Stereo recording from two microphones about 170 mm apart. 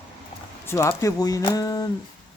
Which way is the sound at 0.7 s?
15° left (ahead or behind).